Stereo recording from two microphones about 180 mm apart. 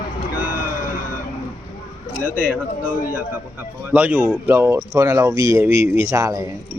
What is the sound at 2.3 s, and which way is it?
Speech, 5° left (ahead or behind).